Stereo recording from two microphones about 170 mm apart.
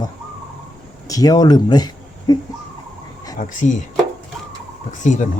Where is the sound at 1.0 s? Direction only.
20° left (ahead or behind).